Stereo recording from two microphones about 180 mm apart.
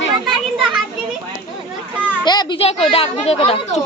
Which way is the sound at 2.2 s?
25° left (ahead or behind).